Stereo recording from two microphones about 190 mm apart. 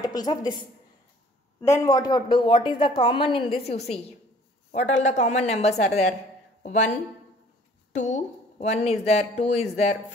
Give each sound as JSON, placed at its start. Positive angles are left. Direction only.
{"t": 0.0, "sound": "a woman's voice", "side_deg": 20}
{"t": 1.6, "sound": "speech", "side_deg": 15}